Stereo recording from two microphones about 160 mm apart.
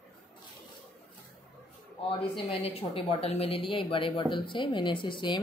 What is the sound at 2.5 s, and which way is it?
A woman's voice, 35° left (ahead or behind).